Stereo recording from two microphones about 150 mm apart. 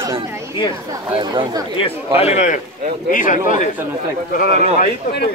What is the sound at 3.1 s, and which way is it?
Speech, 60° left (ahead or behind).